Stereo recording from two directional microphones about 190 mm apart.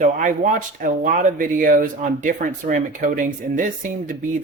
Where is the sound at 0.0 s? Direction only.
40° right (ahead or behind).